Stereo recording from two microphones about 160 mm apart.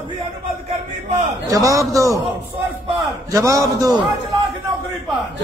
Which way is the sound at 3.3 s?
20° right (ahead or behind).